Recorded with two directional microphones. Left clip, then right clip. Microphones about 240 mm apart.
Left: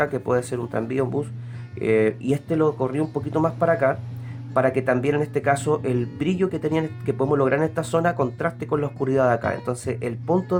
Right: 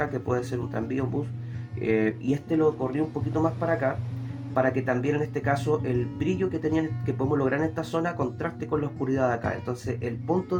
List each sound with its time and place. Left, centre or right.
0.0 s speech: left